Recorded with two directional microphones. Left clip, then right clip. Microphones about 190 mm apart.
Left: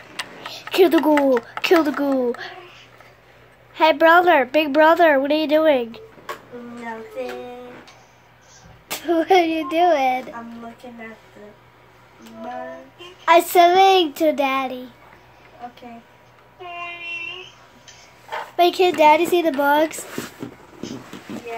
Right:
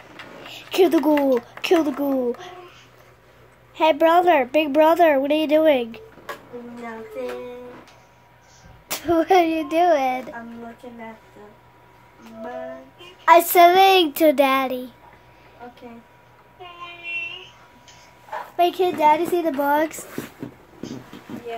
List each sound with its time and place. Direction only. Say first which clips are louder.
0.5 s a child's voice: left 2 dB; 5° left (ahead or behind)
3.7 s a woman's voice: left 3 dB; centre (ahead or behind)
8.8 s a woman's voice: even; centre (ahead or behind)
13.2 s a child's voice: right 1 dB; centre (ahead or behind)
18.6 s speech: left 3 dB; 20° left (ahead or behind)